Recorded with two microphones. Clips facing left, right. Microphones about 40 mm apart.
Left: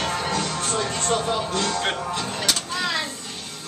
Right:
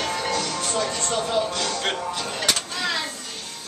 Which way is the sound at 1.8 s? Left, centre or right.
Centre.